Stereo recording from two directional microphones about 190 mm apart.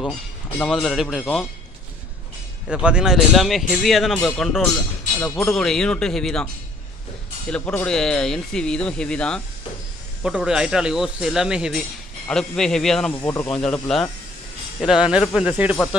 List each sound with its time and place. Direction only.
0.6 s speech: centre (ahead or behind)
2.7 s speech: 5° right (ahead or behind)
13.2 s speech: 15° left (ahead or behind)
13.5 s speech: 5° left (ahead or behind)